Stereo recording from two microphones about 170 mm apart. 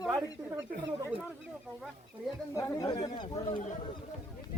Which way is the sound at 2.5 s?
20° left (ahead or behind).